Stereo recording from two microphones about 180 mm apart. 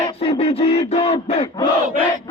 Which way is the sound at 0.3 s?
35° left (ahead or behind).